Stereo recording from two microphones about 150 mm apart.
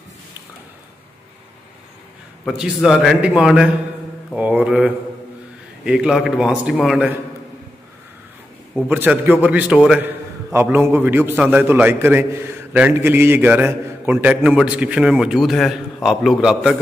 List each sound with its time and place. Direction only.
2.4 s a man's voice: centre (ahead or behind)
8.8 s a man's voice: 10° right (ahead or behind)